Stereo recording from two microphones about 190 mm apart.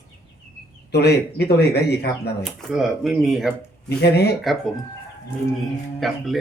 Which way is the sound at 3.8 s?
60° left (ahead or behind).